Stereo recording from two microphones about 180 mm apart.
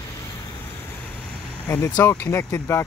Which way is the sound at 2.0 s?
10° left (ahead or behind).